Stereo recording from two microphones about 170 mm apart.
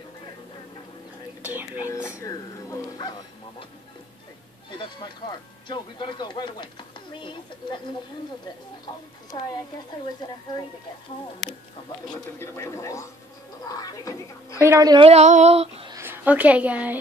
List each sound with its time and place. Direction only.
1.4 s whispering: 10° right (ahead or behind)
1.8 s speech: 15° left (ahead or behind)
4.6 s speech: 25° left (ahead or behind)
9.3 s speech: 30° left (ahead or behind)
12.4 s speech: 15° left (ahead or behind)
14.6 s a woman's voice: 20° right (ahead or behind)
15.0 s female singing: 40° right (ahead or behind)
15.9 s a woman's voice: 15° right (ahead or behind)